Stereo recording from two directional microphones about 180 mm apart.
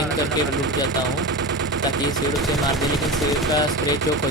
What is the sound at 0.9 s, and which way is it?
Speech, 90° right.